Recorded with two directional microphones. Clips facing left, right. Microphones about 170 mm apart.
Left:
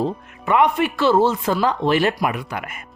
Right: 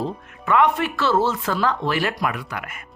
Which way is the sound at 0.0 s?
15° left (ahead or behind).